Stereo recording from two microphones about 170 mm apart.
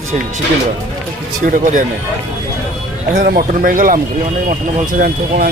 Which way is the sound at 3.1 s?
55° right (ahead or behind).